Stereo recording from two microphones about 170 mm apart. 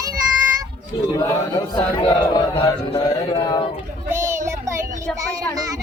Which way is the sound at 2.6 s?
20° left (ahead or behind).